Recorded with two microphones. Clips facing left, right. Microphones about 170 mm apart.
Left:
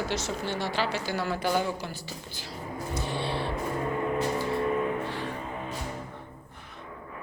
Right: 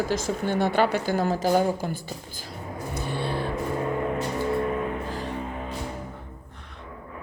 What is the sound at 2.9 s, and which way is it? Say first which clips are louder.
Vehicle: right 2 dB; 55° right (ahead or behind).